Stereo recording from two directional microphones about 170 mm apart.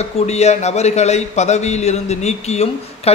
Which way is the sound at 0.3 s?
40° left (ahead or behind).